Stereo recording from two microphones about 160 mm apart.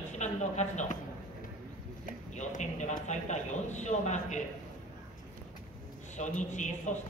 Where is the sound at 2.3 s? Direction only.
50° left (ahead or behind).